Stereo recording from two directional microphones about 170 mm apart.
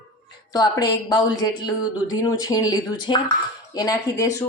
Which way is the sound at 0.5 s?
25° left (ahead or behind).